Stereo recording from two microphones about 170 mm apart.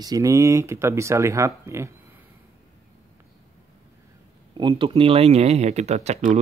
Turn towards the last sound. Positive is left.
turn(degrees=-40)  # may be behind; listen again after turning